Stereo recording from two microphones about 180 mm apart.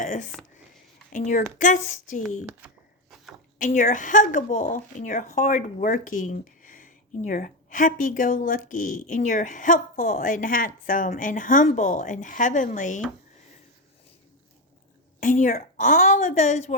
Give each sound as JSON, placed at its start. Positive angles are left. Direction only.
{"t": 0.0, "sound": "speech", "side_deg": 45}
{"t": 2.2, "sound": "speech", "side_deg": -10}
{"t": 3.6, "sound": "speech", "side_deg": 45}
{"t": 15.2, "sound": "speech", "side_deg": 45}